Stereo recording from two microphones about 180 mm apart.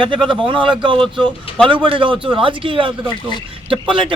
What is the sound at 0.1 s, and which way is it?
A man's voice, 25° right (ahead or behind).